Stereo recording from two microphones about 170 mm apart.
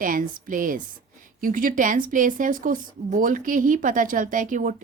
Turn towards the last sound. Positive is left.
turn(degrees=-50)  # may be behind; listen again after turning